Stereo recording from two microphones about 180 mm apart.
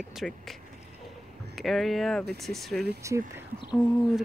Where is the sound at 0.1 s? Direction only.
Centre (ahead or behind).